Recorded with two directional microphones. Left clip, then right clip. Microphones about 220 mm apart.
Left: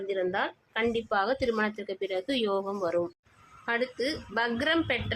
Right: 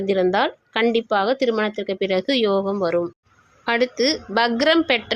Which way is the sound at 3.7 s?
35° right (ahead or behind).